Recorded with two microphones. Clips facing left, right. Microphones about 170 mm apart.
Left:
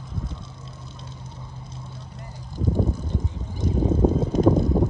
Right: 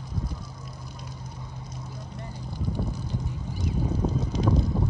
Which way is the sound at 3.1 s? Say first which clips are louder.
Left 2 dB; 25° left (ahead or behind).